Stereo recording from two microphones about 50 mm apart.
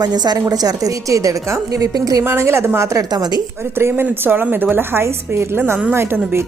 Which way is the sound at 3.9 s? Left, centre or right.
Right.